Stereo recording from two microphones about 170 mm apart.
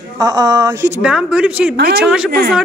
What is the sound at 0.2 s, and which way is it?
Speech, 20° right (ahead or behind).